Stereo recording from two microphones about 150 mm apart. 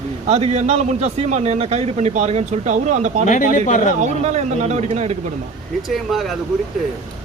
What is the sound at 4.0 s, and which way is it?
A man's voice, 50° right (ahead or behind).